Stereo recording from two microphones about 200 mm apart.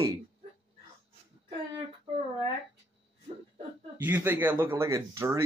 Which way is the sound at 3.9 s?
10° right (ahead or behind).